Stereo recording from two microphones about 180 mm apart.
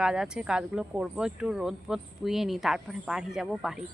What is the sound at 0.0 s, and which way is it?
Speech, 5° right (ahead or behind).